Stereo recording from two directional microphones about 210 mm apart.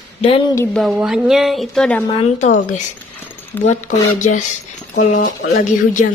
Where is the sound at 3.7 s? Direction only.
35° left (ahead or behind).